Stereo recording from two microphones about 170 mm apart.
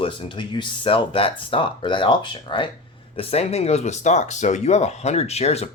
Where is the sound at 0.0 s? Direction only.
30° left (ahead or behind).